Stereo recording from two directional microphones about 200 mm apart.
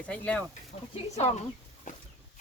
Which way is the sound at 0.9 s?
35° left (ahead or behind).